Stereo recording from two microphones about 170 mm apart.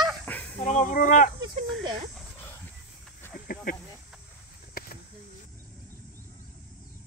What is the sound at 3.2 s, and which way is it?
Snake, 15° left (ahead or behind).